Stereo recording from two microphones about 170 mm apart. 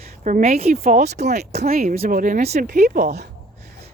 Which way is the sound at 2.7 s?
60° right (ahead or behind).